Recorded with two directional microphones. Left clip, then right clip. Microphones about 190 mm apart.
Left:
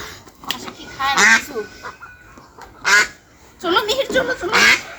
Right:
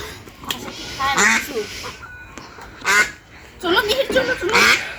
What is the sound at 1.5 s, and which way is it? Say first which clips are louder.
Duck: right 2 dB; centre (ahead or behind).